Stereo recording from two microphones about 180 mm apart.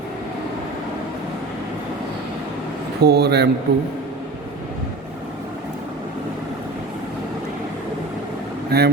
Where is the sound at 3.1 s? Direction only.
65° right (ahead or behind).